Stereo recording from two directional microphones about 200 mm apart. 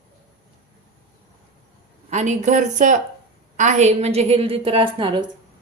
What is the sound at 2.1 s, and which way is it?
A woman's voice, 35° right (ahead or behind).